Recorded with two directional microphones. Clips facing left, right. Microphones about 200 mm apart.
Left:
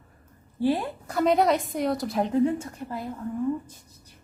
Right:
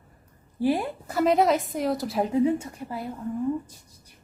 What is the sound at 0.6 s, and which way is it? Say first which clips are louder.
A woman's voice: even; 10° right (ahead or behind).